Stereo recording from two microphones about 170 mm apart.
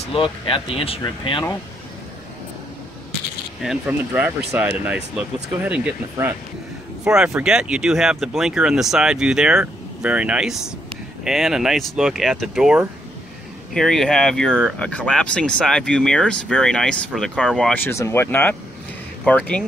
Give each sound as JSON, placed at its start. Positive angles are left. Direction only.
{"t": 0.1, "sound": "speech", "side_deg": 30}
{"t": 3.6, "sound": "speech", "side_deg": -5}
{"t": 17.8, "sound": "speech", "side_deg": 15}